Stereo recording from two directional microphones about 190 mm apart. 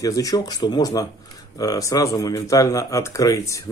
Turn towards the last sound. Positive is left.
turn(degrees=15)  # may be behind; listen again after turning